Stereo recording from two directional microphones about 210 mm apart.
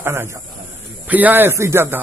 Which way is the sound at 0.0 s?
10° right (ahead or behind).